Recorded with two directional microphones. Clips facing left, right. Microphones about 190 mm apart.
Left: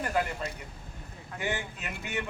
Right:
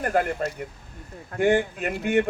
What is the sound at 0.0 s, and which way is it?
A man's voice, 55° right (ahead or behind).